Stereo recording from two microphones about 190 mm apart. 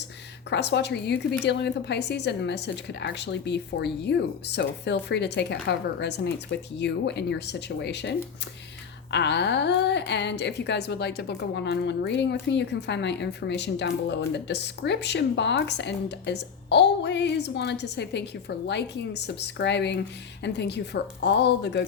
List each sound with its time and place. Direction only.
0.5 s a woman's voice: 65° left (ahead or behind)